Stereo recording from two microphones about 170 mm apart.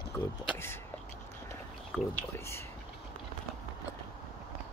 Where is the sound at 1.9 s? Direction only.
10° left (ahead or behind).